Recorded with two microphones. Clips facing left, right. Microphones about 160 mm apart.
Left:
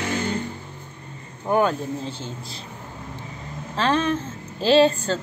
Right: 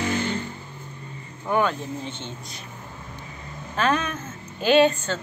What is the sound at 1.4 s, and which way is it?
Speech, 40° left (ahead or behind).